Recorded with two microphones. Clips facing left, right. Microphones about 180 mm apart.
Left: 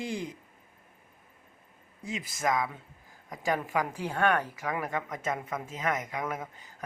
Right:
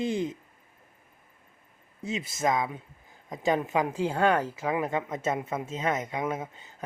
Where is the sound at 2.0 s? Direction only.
25° right (ahead or behind).